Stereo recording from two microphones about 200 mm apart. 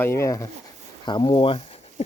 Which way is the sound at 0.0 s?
15° left (ahead or behind).